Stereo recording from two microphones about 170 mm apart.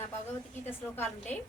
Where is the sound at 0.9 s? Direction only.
10° left (ahead or behind).